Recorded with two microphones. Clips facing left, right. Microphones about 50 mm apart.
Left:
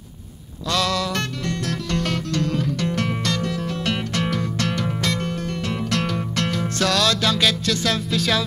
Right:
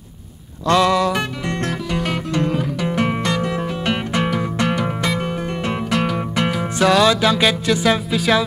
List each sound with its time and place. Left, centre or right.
0.7 s music: right